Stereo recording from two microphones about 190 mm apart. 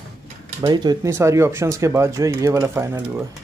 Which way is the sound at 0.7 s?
20° right (ahead or behind).